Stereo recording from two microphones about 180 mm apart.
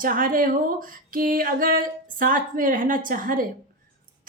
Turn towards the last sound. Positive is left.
turn(degrees=-50)  # may be behind; listen again after turning